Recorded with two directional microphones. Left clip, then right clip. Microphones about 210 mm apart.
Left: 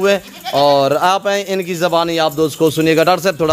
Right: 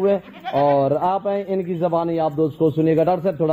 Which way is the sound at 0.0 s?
15° left (ahead or behind).